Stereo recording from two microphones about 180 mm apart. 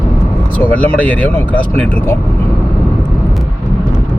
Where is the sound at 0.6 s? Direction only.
10° left (ahead or behind).